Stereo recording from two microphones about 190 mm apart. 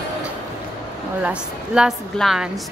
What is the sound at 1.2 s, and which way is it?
A woman's voice, 5° right (ahead or behind).